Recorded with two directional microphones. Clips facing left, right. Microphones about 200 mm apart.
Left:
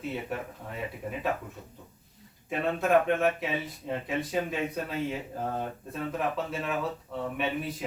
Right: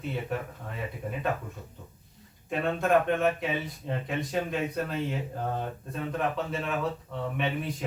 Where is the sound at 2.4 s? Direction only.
5° left (ahead or behind).